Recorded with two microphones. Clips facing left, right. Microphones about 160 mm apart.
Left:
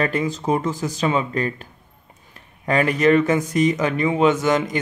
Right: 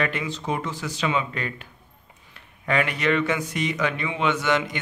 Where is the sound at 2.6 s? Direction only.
40° left (ahead or behind).